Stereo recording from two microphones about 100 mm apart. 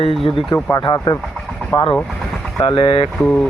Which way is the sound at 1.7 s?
45° left (ahead or behind).